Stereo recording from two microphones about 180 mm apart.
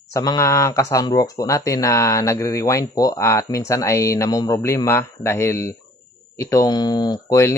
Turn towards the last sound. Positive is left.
turn(degrees=15)  # may be behind; listen again after turning